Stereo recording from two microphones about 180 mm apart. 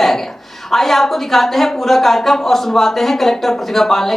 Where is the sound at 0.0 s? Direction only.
Centre (ahead or behind).